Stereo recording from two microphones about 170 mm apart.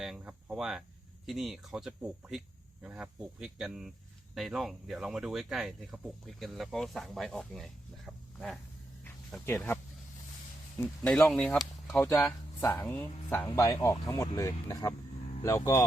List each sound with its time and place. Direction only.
0.0 s a sound: 5° right (ahead or behind)
1.3 s speech: centre (ahead or behind)
9.0 s speech: 15° left (ahead or behind)
11.0 s speech: 5° left (ahead or behind)